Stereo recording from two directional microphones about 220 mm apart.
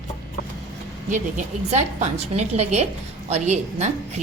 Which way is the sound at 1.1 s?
35° right (ahead or behind).